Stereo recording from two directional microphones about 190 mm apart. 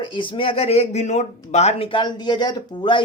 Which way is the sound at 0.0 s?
25° left (ahead or behind).